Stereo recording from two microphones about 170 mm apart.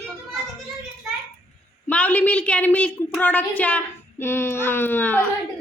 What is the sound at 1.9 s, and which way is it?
A woman's voice, 10° left (ahead or behind).